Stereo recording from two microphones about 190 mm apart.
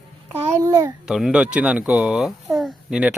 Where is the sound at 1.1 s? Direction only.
5° right (ahead or behind).